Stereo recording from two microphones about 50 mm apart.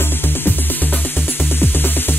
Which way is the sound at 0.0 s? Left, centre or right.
Left.